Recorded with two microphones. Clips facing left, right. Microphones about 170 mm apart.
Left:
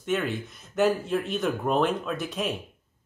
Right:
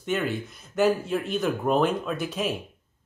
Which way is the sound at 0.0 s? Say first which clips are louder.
Even; centre (ahead or behind).